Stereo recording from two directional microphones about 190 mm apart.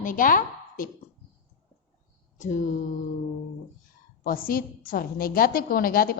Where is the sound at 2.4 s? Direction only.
40° left (ahead or behind).